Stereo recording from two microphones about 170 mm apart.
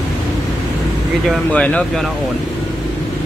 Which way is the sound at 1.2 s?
5° left (ahead or behind).